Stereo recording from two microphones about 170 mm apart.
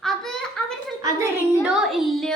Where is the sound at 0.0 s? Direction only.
Centre (ahead or behind).